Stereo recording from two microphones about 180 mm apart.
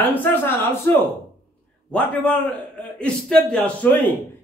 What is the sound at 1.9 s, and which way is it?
Speech, 10° left (ahead or behind).